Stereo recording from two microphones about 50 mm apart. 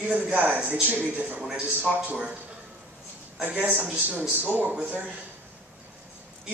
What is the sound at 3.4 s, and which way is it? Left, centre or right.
Speech, right.